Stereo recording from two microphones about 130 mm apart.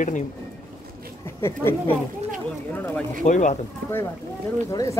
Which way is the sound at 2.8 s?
10° left (ahead or behind).